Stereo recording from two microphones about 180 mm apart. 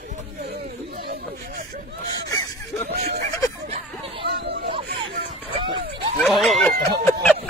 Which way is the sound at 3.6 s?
35° right (ahead or behind).